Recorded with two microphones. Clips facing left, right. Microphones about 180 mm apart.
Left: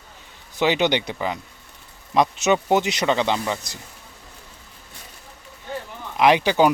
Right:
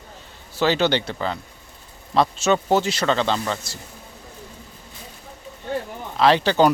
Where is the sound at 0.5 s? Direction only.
15° left (ahead or behind).